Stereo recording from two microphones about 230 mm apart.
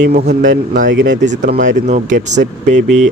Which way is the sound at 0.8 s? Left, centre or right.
Right.